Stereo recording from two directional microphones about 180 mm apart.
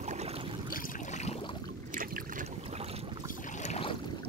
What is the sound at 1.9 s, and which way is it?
Boat, 50° right (ahead or behind).